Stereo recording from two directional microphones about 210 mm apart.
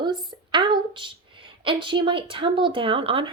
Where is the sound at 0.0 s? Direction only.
20° right (ahead or behind).